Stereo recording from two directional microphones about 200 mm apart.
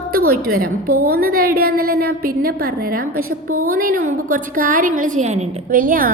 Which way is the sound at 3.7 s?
45° right (ahead or behind).